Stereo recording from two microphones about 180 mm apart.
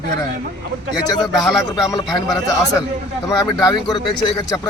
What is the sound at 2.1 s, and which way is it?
Speech, 20° left (ahead or behind).